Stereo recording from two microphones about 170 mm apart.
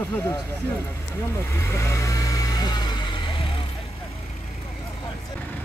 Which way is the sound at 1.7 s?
15° left (ahead or behind).